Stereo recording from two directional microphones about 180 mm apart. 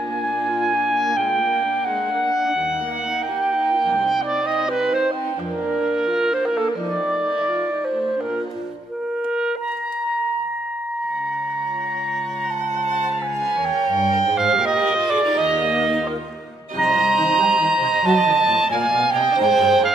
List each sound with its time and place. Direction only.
0.6 s music: centre (ahead or behind)
4.7 s music: 5° right (ahead or behind)
5.8 s clarinet: 5° right (ahead or behind)
13.7 s music: 25° right (ahead or behind)
14.3 s music: 5° right (ahead or behind)